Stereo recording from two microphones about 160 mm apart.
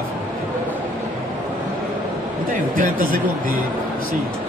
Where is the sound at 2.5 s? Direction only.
60° right (ahead or behind).